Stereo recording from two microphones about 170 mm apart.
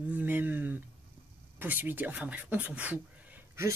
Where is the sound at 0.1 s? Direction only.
10° right (ahead or behind).